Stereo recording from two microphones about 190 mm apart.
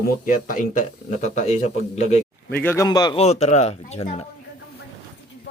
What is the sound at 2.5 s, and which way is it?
A man's voice, 10° left (ahead or behind).